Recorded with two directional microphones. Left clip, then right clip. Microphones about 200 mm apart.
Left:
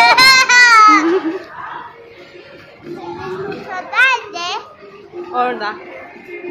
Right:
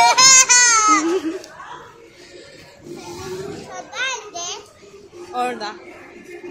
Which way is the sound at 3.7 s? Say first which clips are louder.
Left 13 dB; 25° left (ahead or behind).